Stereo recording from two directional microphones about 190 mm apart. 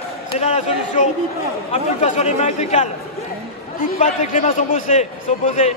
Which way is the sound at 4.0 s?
40° left (ahead or behind).